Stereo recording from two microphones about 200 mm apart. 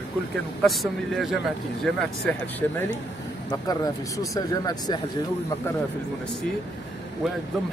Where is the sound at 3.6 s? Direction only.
20° left (ahead or behind).